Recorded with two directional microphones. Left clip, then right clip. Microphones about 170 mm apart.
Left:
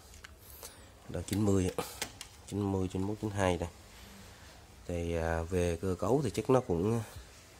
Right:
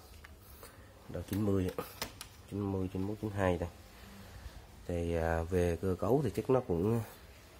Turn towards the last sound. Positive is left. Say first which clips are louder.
# left 2 dB
turn(degrees=15)  # may be behind; listen again after turning